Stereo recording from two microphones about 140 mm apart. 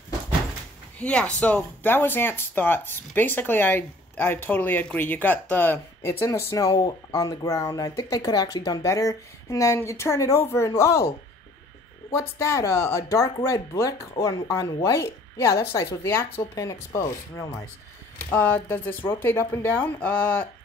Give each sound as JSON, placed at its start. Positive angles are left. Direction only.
{"t": 0.9, "sound": "speech", "side_deg": 10}
{"t": 12.1, "sound": "speech", "side_deg": 20}